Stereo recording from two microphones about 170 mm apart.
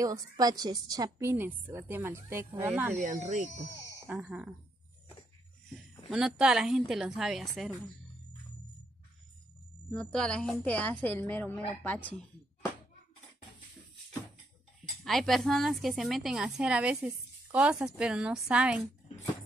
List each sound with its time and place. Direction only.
0.0 s a woman's voice: 20° right (ahead or behind)
2.9 s speech: 45° right (ahead or behind)
4.1 s a woman's voice: 10° right (ahead or behind)
6.0 s a woman's voice: 5° right (ahead or behind)
9.8 s a woman's voice: 5° left (ahead or behind)
15.0 s a woman's voice: centre (ahead or behind)